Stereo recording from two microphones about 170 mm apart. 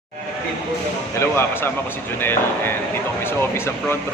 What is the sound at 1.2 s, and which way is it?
Speech, 15° left (ahead or behind).